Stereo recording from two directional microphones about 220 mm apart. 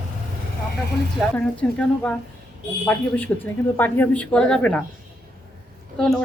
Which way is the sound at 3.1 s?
10° left (ahead or behind).